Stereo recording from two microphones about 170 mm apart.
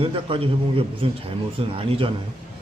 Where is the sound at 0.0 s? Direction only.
35° right (ahead or behind).